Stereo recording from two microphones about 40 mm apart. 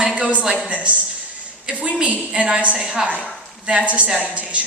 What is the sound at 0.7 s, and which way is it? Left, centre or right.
Speech, right.